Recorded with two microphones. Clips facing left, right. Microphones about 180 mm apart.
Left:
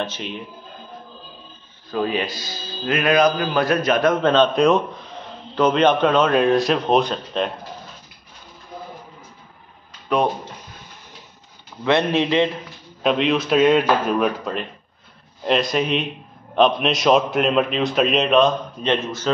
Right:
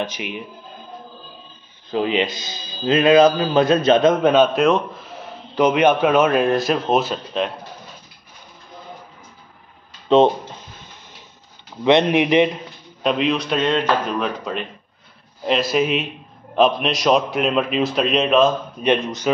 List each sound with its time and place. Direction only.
0.0 s a man's voice: 10° right (ahead or behind)
1.9 s a man's voice: 20° right (ahead or behind); by 7.5 s 5° right (ahead or behind)
10.0 s speech: 25° right (ahead or behind)
11.8 s a man's voice: 20° right (ahead or behind)
13.0 s a man's voice: centre (ahead or behind)
18.9 s a man's voice: 15° right (ahead or behind)